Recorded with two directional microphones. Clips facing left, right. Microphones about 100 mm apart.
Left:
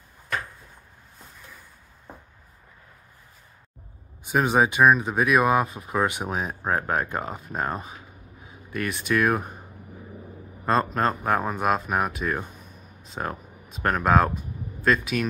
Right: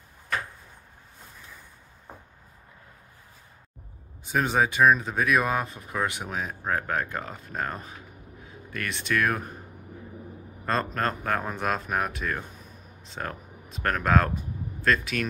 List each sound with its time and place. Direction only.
4.2 s speech: 15° left (ahead or behind)
10.6 s speech: 15° left (ahead or behind)